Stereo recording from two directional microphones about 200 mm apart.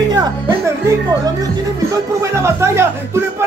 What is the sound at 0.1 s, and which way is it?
Music, 20° right (ahead or behind).